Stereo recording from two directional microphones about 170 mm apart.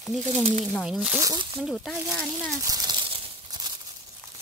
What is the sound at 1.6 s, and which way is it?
Speech, centre (ahead or behind).